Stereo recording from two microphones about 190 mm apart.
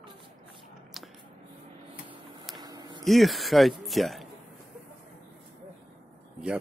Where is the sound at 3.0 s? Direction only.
Centre (ahead or behind).